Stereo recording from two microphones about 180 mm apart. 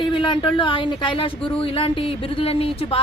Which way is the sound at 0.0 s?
25° left (ahead or behind).